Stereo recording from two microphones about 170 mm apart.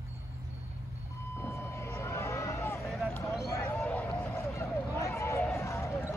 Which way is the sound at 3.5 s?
10° left (ahead or behind).